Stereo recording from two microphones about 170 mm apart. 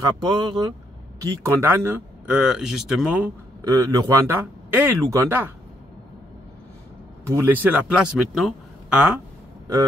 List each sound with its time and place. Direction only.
0.0 s speech: 25° right (ahead or behind); by 3.3 s 5° right (ahead or behind)
3.6 s speech: 20° right (ahead or behind)
7.2 s speech: 15° right (ahead or behind)